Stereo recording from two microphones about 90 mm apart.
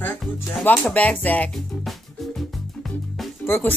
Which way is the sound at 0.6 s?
15° left (ahead or behind).